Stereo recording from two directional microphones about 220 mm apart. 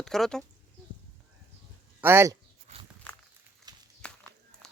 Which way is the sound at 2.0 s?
10° right (ahead or behind).